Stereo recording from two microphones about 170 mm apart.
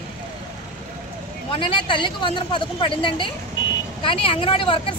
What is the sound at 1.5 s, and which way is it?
A woman's voice, 30° left (ahead or behind).